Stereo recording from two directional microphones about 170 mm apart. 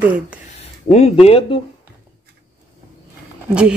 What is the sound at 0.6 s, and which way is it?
Speech, 40° left (ahead or behind).